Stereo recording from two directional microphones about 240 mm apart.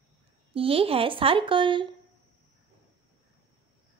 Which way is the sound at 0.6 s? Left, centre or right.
Right.